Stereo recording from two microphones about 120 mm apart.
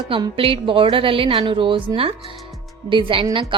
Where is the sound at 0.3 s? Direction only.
50° right (ahead or behind).